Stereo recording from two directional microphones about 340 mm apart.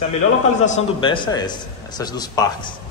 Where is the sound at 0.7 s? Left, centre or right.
Centre.